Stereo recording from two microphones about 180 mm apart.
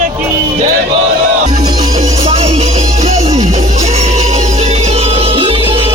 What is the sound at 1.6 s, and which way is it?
Music, 20° right (ahead or behind).